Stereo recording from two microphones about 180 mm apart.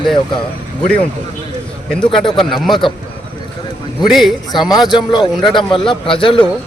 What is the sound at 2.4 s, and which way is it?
Speech, centre (ahead or behind).